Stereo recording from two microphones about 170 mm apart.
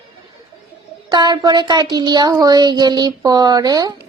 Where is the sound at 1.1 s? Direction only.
25° right (ahead or behind).